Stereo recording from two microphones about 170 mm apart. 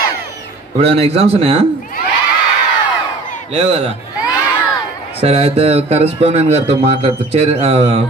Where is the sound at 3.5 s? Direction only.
35° right (ahead or behind).